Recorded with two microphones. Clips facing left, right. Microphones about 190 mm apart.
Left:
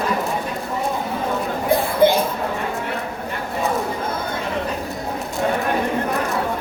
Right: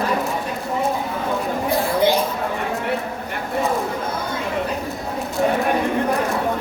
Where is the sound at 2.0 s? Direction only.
55° left (ahead or behind).